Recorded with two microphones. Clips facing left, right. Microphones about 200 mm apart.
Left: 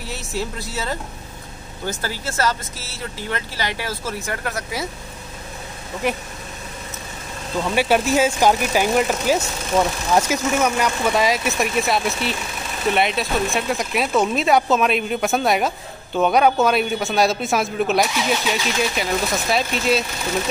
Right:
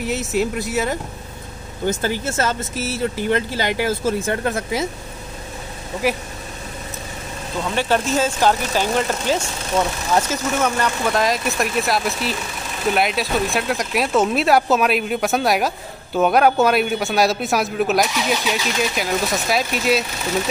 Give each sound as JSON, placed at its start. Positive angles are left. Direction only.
{"t": 0.0, "sound": "speech", "side_deg": -20}
{"t": 6.0, "sound": "a man's voice", "side_deg": -5}
{"t": 7.7, "sound": "a man's voice", "side_deg": 10}